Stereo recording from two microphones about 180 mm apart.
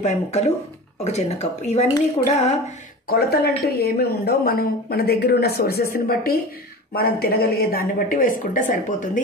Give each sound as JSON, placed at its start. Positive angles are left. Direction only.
{"t": 0.0, "sound": "speech", "side_deg": 40}
{"t": 3.1, "sound": "speech", "side_deg": 60}